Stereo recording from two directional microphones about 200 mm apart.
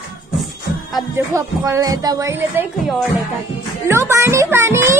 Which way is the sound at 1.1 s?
15° right (ahead or behind).